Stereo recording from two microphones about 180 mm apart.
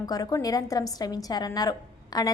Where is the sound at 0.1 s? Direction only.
20° left (ahead or behind).